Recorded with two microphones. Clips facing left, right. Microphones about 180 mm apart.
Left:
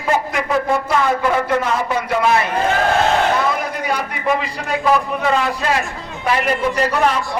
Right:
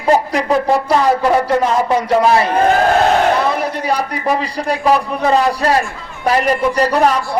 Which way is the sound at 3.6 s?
35° right (ahead or behind).